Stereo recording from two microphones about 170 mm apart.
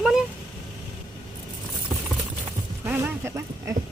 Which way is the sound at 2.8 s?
15° right (ahead or behind).